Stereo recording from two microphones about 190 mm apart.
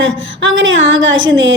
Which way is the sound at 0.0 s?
75° right (ahead or behind).